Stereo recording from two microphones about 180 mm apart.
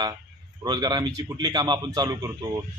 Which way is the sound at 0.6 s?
20° right (ahead or behind).